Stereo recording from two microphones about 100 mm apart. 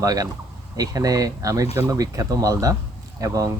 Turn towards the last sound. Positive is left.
turn(degrees=-35)  # may be behind; listen again after turning